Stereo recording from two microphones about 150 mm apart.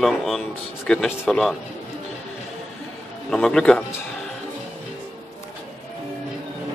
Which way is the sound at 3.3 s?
5° left (ahead or behind).